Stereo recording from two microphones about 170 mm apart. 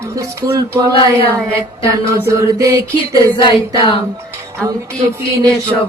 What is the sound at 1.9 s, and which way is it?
Mantra, 15° right (ahead or behind).